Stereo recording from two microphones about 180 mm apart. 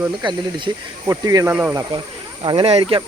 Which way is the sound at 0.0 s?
25° right (ahead or behind).